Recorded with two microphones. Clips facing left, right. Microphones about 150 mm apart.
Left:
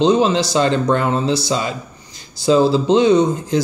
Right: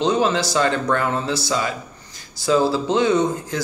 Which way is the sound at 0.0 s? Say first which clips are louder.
Left 5 dB; 20° left (ahead or behind).